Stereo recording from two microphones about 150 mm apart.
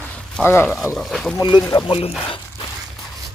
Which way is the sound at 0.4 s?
15° left (ahead or behind).